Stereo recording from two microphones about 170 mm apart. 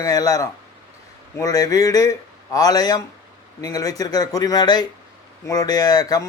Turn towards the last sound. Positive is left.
turn(degrees=20)  # may be behind; listen again after turning